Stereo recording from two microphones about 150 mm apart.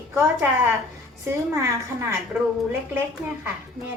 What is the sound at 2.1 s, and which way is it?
Speech, 15° right (ahead or behind).